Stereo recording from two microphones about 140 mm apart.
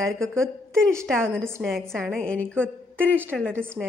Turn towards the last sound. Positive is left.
turn(degrees=-15)  # may be behind; listen again after turning